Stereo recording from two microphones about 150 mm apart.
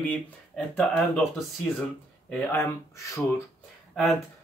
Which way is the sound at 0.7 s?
5° left (ahead or behind).